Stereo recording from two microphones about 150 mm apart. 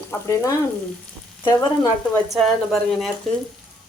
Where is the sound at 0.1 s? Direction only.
20° left (ahead or behind).